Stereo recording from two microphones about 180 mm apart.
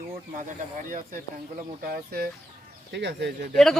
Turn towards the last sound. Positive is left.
turn(degrees=-70)  # may be behind; listen again after turning